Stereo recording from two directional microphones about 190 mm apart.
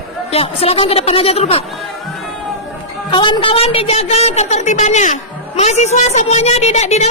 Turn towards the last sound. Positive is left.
turn(degrees=35)  # may be behind; listen again after turning